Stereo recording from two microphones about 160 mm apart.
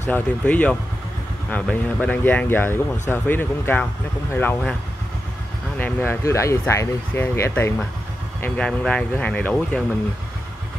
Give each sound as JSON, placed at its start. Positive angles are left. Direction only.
{"t": 0.0, "sound": "speech", "side_deg": 10}
{"t": 5.8, "sound": "speech", "side_deg": 10}
{"t": 8.4, "sound": "speech", "side_deg": 5}